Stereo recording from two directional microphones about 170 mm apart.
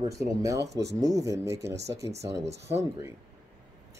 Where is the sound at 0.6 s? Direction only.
80° right.